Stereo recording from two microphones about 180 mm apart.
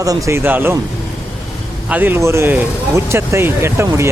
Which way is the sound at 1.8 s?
10° right (ahead or behind).